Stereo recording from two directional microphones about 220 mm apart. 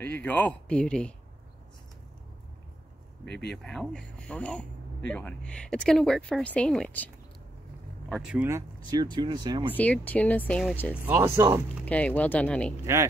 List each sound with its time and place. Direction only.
0.0 s speech: 5° left (ahead or behind)
3.3 s speech: 50° left (ahead or behind)
3.6 s speech: centre (ahead or behind)
8.1 s speech: 5° right (ahead or behind); by 9.7 s 20° right (ahead or behind)
9.8 s speech: 5° left (ahead or behind)
11.1 s speech: 10° right (ahead or behind)
11.8 s speech: 5° left (ahead or behind)